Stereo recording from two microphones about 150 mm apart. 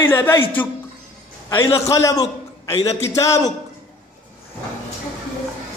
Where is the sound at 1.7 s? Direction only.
20° left (ahead or behind).